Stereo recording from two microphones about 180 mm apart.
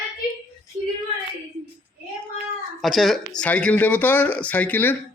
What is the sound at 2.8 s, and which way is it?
Speech, centre (ahead or behind).